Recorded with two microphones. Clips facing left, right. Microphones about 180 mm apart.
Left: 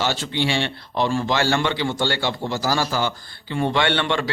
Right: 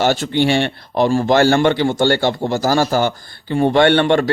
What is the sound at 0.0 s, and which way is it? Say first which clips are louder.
Speech: right 8 dB; 50° right (ahead or behind).